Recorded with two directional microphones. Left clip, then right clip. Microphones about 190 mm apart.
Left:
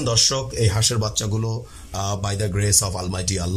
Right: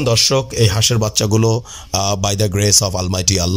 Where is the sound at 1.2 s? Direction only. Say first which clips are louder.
Right 11 dB; 35° right (ahead or behind).